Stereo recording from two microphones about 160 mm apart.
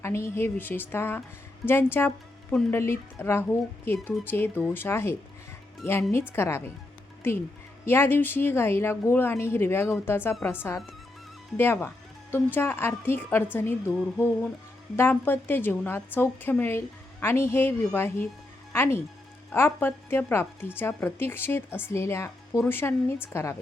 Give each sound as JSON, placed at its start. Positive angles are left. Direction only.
{"t": 0.0, "sound": "a woman's voice", "side_deg": 15}